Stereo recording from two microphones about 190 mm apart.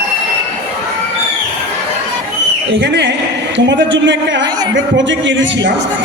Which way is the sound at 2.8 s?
65° right (ahead or behind).